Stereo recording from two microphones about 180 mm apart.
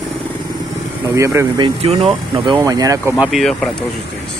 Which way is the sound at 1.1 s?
15° right (ahead or behind).